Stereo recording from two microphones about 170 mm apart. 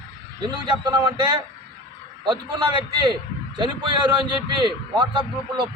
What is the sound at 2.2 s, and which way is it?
A man's voice, 25° right (ahead or behind).